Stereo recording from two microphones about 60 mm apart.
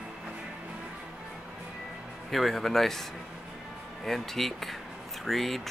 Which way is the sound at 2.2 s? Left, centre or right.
Centre.